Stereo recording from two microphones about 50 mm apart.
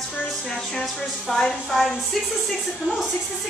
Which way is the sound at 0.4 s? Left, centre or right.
Centre.